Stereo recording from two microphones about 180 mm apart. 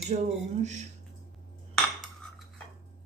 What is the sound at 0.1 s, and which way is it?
Speech, 45° right (ahead or behind).